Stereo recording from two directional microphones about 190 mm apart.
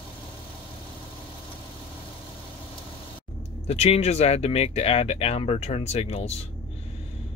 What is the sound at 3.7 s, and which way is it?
Speech, 35° left (ahead or behind).